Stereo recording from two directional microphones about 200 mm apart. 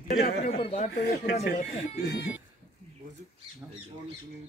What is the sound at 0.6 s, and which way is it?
Speech, 30° left (ahead or behind).